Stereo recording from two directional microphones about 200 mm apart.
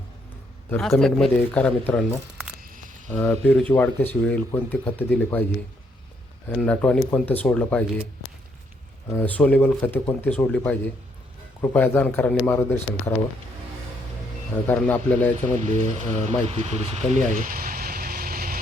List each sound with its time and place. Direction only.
0.7 s speech: centre (ahead or behind)
2.6 s cricket: 45° right (ahead or behind)
3.1 s speech: 10° left (ahead or behind)
6.5 s speech: 5° left (ahead or behind)
9.1 s speech: 10° left (ahead or behind)
14.7 s speech: 10° left (ahead or behind)
15.5 s speech: 35° right (ahead or behind)
17.3 s a sound: 45° right (ahead or behind)